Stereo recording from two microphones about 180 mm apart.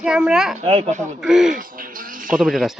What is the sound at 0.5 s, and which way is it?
Speech, 35° right (ahead or behind).